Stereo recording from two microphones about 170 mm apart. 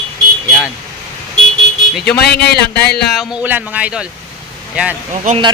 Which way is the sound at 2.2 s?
70° left (ahead or behind).